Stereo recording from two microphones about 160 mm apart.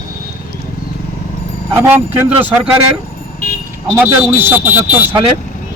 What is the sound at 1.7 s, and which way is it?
Speech, 15° right (ahead or behind).